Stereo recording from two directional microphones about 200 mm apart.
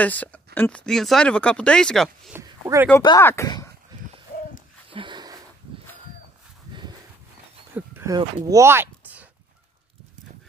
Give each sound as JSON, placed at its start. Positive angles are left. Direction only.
{"t": 0.0, "sound": "speech", "side_deg": 5}
{"t": 2.3, "sound": "speech", "side_deg": -10}
{"t": 3.0, "sound": "speech", "side_deg": 15}
{"t": 4.9, "sound": "a sound", "side_deg": -25}
{"t": 7.7, "sound": "a sound", "side_deg": -10}
{"t": 8.2, "sound": "speech", "side_deg": -20}